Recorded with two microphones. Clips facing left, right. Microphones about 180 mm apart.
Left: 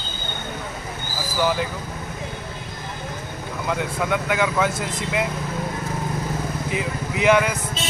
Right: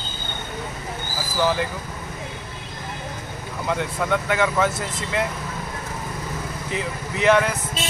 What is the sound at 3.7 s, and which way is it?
Speech, 5° left (ahead or behind).